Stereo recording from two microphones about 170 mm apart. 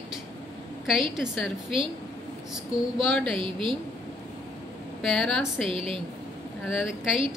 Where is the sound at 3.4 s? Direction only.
30° right (ahead or behind).